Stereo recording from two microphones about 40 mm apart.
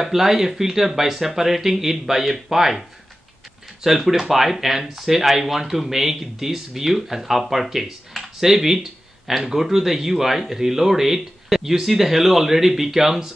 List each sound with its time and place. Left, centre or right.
0.0 s speech: centre
3.8 s speech: centre